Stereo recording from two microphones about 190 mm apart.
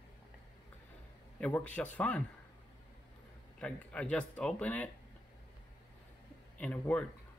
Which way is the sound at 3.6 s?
5° left (ahead or behind).